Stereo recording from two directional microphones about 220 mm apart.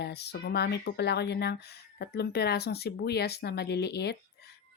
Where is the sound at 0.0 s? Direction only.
50° left (ahead or behind).